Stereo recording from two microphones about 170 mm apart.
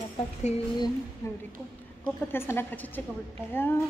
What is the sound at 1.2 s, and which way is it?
A woman's voice, 15° left (ahead or behind).